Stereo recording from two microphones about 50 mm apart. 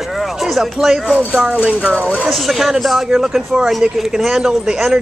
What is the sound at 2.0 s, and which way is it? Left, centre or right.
Speech, right.